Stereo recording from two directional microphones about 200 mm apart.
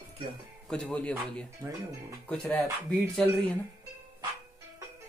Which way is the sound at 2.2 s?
5° left (ahead or behind).